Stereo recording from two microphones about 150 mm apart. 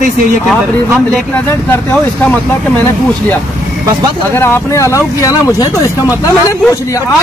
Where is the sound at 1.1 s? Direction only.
10° left (ahead or behind).